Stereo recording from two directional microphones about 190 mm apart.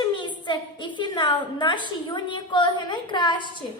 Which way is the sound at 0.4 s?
25° left (ahead or behind).